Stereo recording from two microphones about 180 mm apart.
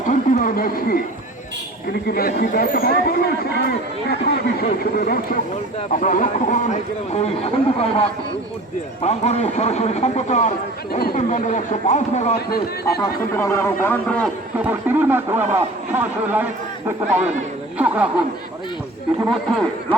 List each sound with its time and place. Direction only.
0.1 s a sound: 50° left (ahead or behind)
2.0 s speech: 55° left (ahead or behind); by 8.0 s 35° left (ahead or behind)
9.0 s speech: 35° left (ahead or behind)
10.9 s speech: 50° left (ahead or behind)
13.3 s a man's voice: 15° left (ahead or behind)
14.6 s a man's voice: 10° right (ahead or behind)
17.7 s a man's voice: 10° right (ahead or behind)
19.3 s a man's voice: 5° left (ahead or behind)